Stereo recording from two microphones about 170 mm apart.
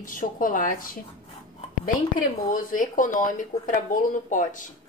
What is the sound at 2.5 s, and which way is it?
A woman's voice, 55° left (ahead or behind).